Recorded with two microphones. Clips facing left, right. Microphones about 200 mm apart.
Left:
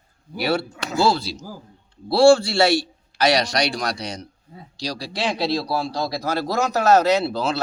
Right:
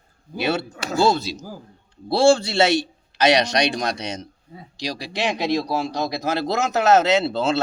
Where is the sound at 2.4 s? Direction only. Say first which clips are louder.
Even; 20° right (ahead or behind).